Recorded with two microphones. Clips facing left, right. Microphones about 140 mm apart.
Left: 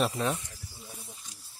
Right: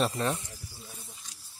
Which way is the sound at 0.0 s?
Centre (ahead or behind).